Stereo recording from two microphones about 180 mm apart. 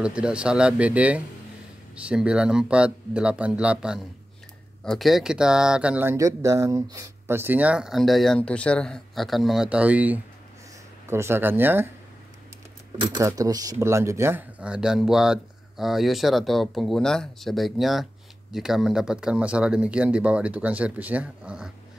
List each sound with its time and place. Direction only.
0.0 s speech: 5° right (ahead or behind)
12.9 s speech: 30° right (ahead or behind); by 21.7 s 5° right (ahead or behind)